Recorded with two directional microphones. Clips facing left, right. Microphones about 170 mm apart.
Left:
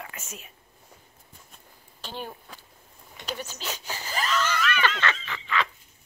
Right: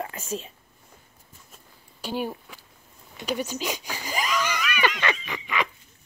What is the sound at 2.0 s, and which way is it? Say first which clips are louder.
Speech: right 8 dB; 10° right (ahead or behind).